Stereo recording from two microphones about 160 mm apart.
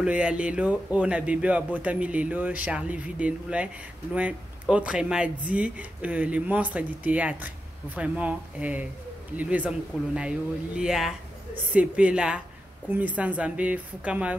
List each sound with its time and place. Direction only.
0.0 s speech: 5° right (ahead or behind)